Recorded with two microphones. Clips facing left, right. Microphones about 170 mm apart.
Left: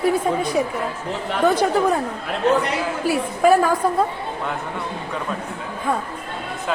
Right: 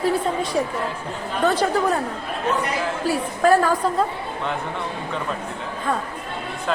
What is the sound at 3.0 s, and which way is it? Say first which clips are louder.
A woman's voice: left 2 dB; 10° left (ahead or behind).